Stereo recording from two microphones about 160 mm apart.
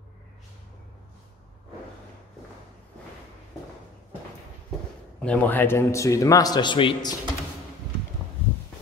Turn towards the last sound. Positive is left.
turn(degrees=30)  # may be behind; listen again after turning